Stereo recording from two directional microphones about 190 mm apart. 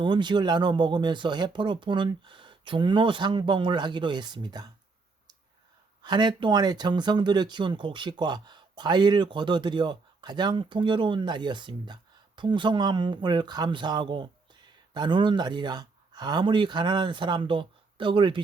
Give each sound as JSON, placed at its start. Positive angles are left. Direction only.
{"t": 0.0, "sound": "speech", "side_deg": -25}
{"t": 6.0, "sound": "speech", "side_deg": -25}